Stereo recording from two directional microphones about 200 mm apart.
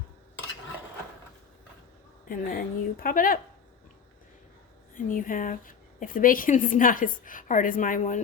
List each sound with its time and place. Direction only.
2.3 s a woman's voice: 45° left (ahead or behind)
4.9 s a woman's voice: 40° left (ahead or behind)